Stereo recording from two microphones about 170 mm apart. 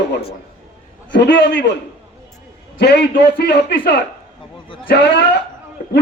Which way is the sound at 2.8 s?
80° left.